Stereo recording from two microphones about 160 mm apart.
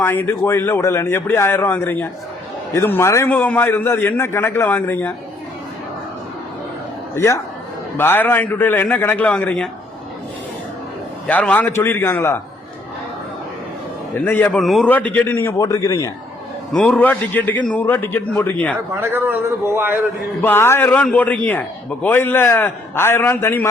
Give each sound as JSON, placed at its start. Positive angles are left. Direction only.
{"t": 0.0, "sound": "a man's voice", "side_deg": 15}
{"t": 7.2, "sound": "a man's voice", "side_deg": 15}
{"t": 11.3, "sound": "a man's voice", "side_deg": 10}
{"t": 14.3, "sound": "a man's voice", "side_deg": 10}
{"t": 16.7, "sound": "a man's voice", "side_deg": 5}
{"t": 18.9, "sound": "a man's voice", "side_deg": -10}
{"t": 20.4, "sound": "a man's voice", "side_deg": 15}